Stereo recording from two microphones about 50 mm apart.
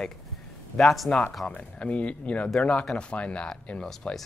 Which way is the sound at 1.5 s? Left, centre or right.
Left.